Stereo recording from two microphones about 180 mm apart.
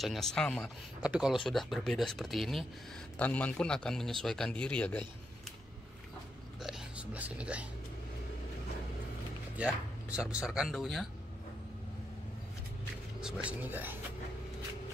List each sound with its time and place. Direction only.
0.0 s speech: centre (ahead or behind)
6.6 s a sound: 5° right (ahead or behind)
9.6 s speech: 5° right (ahead or behind)
13.2 s speech: 5° right (ahead or behind)